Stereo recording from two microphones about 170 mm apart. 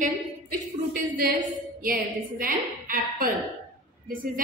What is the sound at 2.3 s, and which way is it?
A woman's voice, 55° right (ahead or behind).